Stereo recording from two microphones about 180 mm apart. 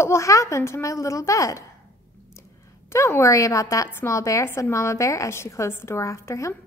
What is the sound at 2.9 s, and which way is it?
A woman's voice, 15° left (ahead or behind).